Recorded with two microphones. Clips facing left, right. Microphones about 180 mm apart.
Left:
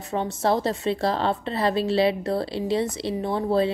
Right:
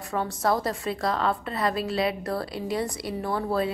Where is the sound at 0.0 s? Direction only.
25° left (ahead or behind).